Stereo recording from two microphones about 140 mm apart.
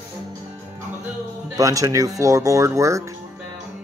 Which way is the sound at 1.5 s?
25° right (ahead or behind).